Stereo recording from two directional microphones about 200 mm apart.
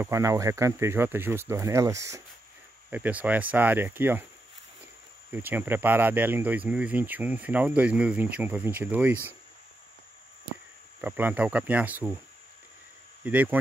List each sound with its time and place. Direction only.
0.0 s speech: 15° right (ahead or behind)
5.3 s speech: 10° right (ahead or behind)
11.0 s speech: 10° right (ahead or behind)
13.2 s speech: 10° right (ahead or behind)